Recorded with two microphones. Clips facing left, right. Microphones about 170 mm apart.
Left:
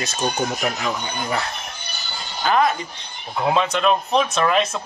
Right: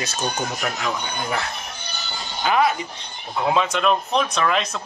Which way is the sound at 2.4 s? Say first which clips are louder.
Left 1 dB; 10° right (ahead or behind).